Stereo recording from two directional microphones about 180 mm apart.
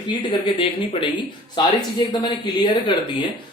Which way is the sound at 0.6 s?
30° left (ahead or behind).